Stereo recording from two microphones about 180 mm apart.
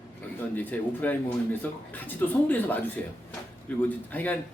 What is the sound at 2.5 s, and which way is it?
Speech, 10° left (ahead or behind).